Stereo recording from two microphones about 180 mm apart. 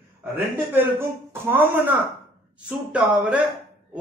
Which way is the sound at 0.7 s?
10° right (ahead or behind).